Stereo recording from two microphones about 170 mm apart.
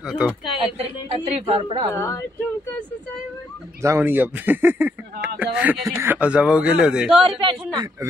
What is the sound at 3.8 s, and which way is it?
A man's voice, 15° right (ahead or behind).